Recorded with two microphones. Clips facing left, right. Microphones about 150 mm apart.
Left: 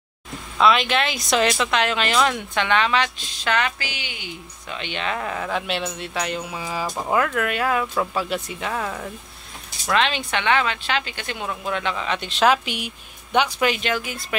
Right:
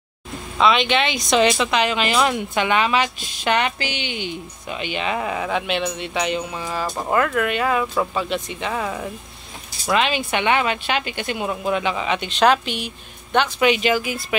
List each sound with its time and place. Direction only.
0.6 s speech: centre (ahead or behind)
3.4 s a woman's voice: 20° right (ahead or behind)
4.7 s speech: 10° right (ahead or behind); by 13.7 s 10° left (ahead or behind)
13.7 s speech: 5° right (ahead or behind)